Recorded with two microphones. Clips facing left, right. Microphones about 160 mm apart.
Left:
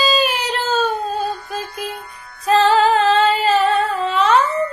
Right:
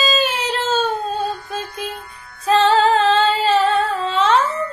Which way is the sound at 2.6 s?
30° right (ahead or behind).